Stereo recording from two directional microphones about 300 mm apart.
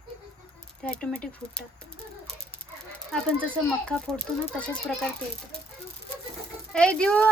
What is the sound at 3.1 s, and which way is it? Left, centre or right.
Speech, centre.